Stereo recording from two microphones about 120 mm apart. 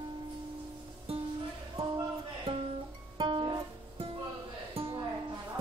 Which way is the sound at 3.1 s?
40° right (ahead or behind).